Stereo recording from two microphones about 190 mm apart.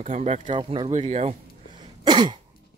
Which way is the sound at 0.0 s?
40° right (ahead or behind).